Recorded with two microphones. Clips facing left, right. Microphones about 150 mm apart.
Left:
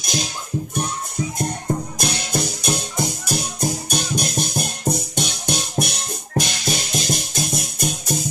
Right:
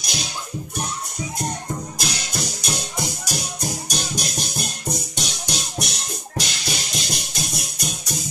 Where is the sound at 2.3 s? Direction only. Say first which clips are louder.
Left 5 dB; 50° left (ahead or behind).